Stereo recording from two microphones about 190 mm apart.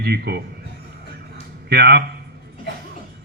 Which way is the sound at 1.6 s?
55° right (ahead or behind).